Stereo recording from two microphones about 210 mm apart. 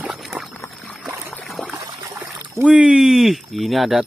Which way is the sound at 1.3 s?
5° left (ahead or behind).